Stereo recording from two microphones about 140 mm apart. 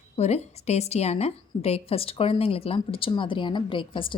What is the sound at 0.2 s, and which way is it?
Speech, 50° left (ahead or behind).